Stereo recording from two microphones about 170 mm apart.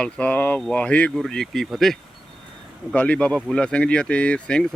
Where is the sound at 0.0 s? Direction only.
10° left (ahead or behind).